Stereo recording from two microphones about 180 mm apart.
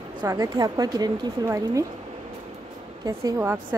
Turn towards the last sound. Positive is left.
turn(degrees=-15)  # may be behind; listen again after turning